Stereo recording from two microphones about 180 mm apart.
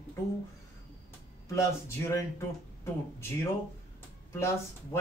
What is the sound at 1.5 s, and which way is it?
Speech, 15° left (ahead or behind).